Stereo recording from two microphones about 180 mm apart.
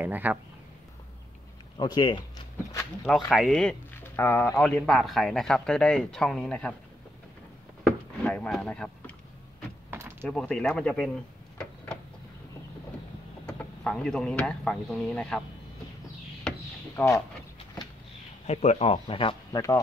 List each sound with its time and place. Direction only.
0.0 s speech: 10° right (ahead or behind)
1.8 s speech: 25° left (ahead or behind)
3.3 s speech: centre (ahead or behind)
7.8 s speech: 5° left (ahead or behind)
9.8 s door: 10° right (ahead or behind)
10.2 s speech: 5° left (ahead or behind)
13.5 s speech: 5° left (ahead or behind)
16.4 s a sound: 10° left (ahead or behind)
18.5 s speech: 35° left (ahead or behind)